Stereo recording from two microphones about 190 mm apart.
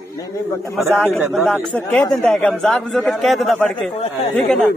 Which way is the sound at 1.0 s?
Centre (ahead or behind).